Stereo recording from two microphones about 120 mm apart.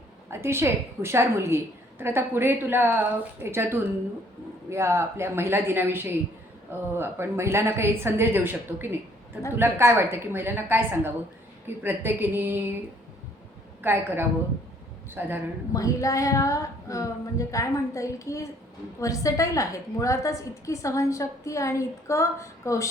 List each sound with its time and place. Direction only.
0.3 s a woman's voice: 20° right (ahead or behind)
13.8 s a woman's voice: 20° right (ahead or behind)
15.7 s a woman's voice: 30° left (ahead or behind)